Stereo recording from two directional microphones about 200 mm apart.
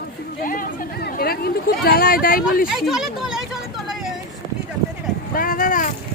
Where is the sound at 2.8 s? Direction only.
Centre (ahead or behind).